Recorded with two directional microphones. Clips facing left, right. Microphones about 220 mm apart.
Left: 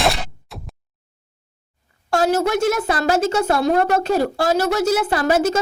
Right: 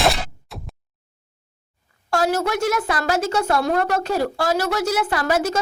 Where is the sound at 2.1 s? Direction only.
25° left (ahead or behind).